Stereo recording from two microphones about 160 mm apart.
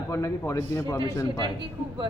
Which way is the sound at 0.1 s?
20° left (ahead or behind).